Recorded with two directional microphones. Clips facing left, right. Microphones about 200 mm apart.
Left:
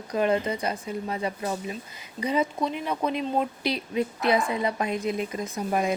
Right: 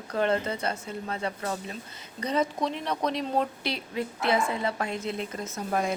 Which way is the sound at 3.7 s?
15° left (ahead or behind).